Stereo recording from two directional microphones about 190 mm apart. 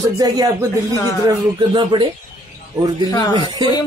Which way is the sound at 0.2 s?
20° right (ahead or behind).